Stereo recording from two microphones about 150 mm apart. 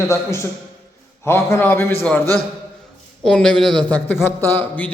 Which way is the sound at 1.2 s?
15° left (ahead or behind).